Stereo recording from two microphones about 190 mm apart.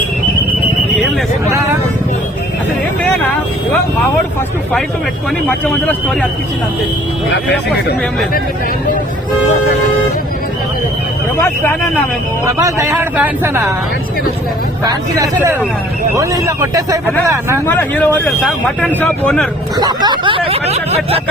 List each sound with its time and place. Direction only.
1.5 s speech: 15° right (ahead or behind)
3.0 s speech: 10° left (ahead or behind)
5.6 s speech: 5° left (ahead or behind)
11.3 s speech: 10° left (ahead or behind)
12.5 s speech: 15° right (ahead or behind)
14.8 s speech: 15° right (ahead or behind)
17.7 s speech: 10° left (ahead or behind)
19.7 s speech: 20° right (ahead or behind)